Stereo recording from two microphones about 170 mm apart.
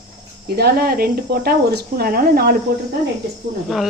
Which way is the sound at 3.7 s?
5° right (ahead or behind).